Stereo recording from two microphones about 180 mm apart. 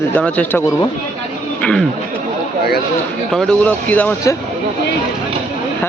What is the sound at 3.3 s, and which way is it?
A man's voice, 5° left (ahead or behind).